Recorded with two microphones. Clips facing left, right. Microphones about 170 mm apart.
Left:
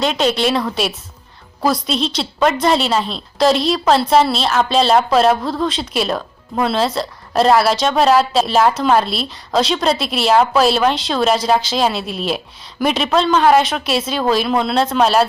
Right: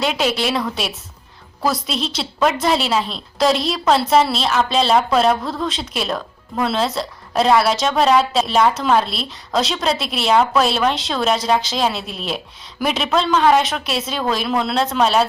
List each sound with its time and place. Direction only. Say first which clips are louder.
0.0 s speech: left 3 dB; 5° right (ahead or behind)